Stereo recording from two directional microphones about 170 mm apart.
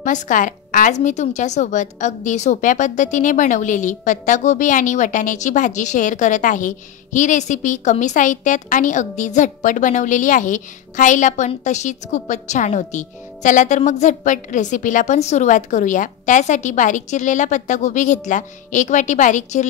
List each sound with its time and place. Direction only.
0.0 s a woman's voice: 50° left (ahead or behind)